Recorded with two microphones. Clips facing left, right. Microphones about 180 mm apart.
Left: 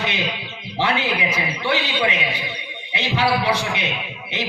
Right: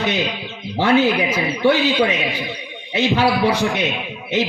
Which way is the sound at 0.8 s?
45° right (ahead or behind).